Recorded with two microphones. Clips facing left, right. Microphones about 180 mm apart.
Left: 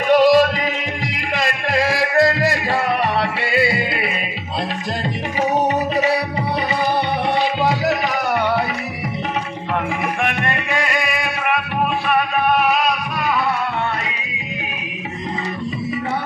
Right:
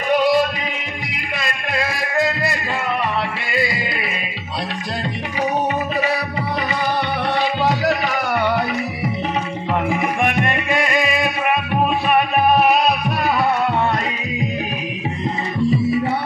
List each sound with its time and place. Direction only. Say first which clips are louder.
0.1 s music: left 4 dB; 90° left
3.4 s music: left 3 dB; 65° left (ahead or behind)
10.2 s music: right 3 dB; 15° right (ahead or behind)